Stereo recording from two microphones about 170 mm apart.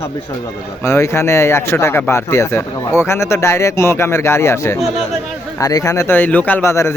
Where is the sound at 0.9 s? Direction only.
15° left (ahead or behind).